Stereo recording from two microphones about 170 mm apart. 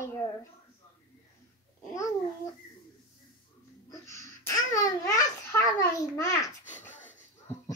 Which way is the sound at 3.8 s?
15° left (ahead or behind).